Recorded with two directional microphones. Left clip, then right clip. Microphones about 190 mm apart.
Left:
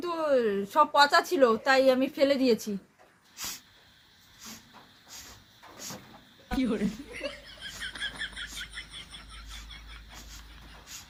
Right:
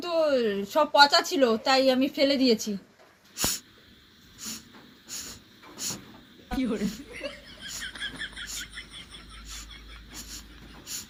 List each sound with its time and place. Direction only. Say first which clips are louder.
0.0 s speech: right 2 dB; 10° left (ahead or behind)
3.3 s snort: right 9 dB; 15° right (ahead or behind)
4.4 s hiss: right 7 dB; 15° right (ahead or behind)
5.0 s a sound: right 9 dB; 15° right (ahead or behind)
6.5 s speech: even; centre (ahead or behind)
7.0 s chuckle: even; centre (ahead or behind)
8.5 s a sound: right 1 dB; centre (ahead or behind)